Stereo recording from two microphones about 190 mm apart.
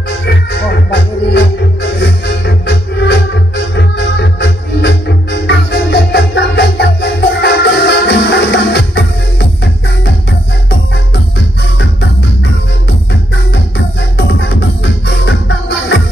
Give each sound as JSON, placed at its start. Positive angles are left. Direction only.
{"t": 0.5, "sound": "music", "side_deg": 65}
{"t": 13.5, "sound": "music", "side_deg": 65}